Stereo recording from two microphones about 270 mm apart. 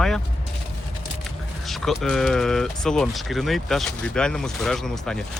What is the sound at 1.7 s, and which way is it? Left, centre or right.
Speech, centre.